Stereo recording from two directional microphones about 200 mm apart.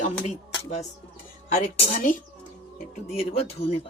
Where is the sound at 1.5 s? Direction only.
40° left (ahead or behind).